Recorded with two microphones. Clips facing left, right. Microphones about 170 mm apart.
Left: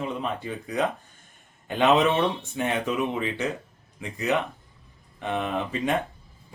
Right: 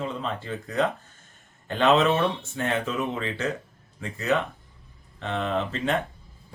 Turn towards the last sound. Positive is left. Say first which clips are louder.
# even
turn(degrees=15)  # may be behind; listen again after turning